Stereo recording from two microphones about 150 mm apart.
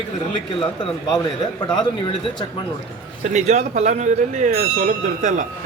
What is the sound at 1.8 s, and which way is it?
Speech, 30° left (ahead or behind).